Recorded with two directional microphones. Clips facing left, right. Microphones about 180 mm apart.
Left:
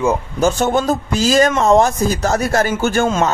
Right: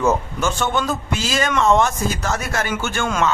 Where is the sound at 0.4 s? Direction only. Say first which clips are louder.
Left 6 dB; 40° left (ahead or behind).